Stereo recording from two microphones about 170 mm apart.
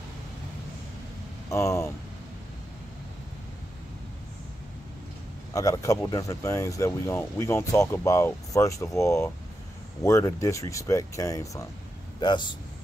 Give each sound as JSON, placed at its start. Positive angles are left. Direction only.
{"t": 1.5, "sound": "speech", "side_deg": 15}
{"t": 5.5, "sound": "speech", "side_deg": 20}